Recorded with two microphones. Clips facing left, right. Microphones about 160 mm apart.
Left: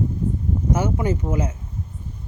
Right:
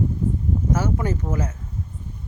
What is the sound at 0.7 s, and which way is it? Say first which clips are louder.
Speech: left 3 dB; 15° left (ahead or behind).